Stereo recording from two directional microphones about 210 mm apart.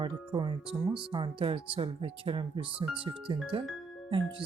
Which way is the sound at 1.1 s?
25° right (ahead or behind).